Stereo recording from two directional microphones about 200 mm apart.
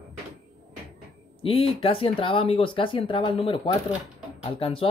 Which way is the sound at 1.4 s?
30° left (ahead or behind).